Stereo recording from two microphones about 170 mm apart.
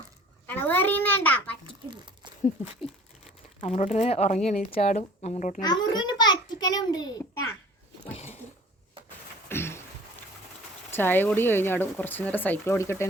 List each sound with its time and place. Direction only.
0.4 s a child's voice: 10° left (ahead or behind)
1.9 s a sound: 30° right (ahead or behind)
3.6 s speech: 40° left (ahead or behind)
4.5 s a woman's voice: 60° left (ahead or behind)
4.8 s speech: 40° left (ahead or behind)
5.5 s a child's voice: 25° left (ahead or behind)
8.1 s a sound: 40° left (ahead or behind)
9.5 s a sound: 15° left (ahead or behind)
10.9 s speech: 10° left (ahead or behind)